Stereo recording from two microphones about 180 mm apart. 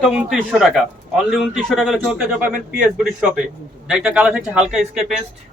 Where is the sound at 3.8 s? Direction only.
5° right (ahead or behind).